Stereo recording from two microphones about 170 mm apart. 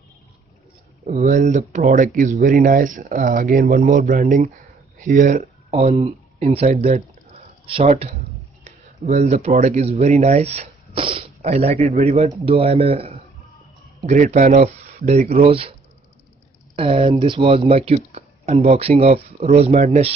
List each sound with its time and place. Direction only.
1.0 s speech: 45° right (ahead or behind)
16.7 s speech: 35° right (ahead or behind)